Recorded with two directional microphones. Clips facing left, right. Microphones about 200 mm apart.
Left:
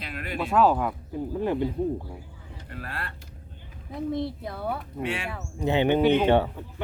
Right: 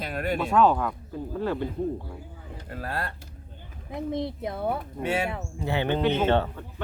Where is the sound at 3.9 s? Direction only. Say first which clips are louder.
Left 1 dB; 20° right (ahead or behind).